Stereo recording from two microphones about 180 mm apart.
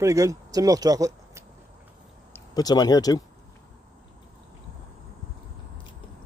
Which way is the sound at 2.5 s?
20° left (ahead or behind).